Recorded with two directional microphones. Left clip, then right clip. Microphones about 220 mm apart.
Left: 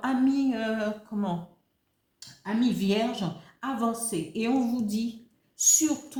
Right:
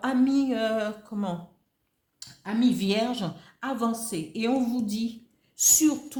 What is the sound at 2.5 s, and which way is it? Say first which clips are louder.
Speech: right 2 dB; 40° right (ahead or behind).